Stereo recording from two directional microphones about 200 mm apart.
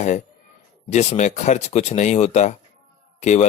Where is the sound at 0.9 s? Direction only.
35° left (ahead or behind).